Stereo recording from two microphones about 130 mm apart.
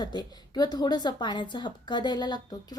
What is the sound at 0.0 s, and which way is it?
A woman's voice, 35° left (ahead or behind).